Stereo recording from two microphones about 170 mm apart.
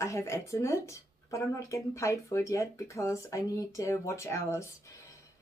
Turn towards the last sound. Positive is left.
turn(degrees=15)  # may be behind; listen again after turning